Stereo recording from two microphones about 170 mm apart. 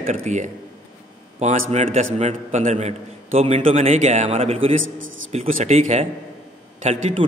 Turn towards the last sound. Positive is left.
turn(degrees=-40)  # may be behind; listen again after turning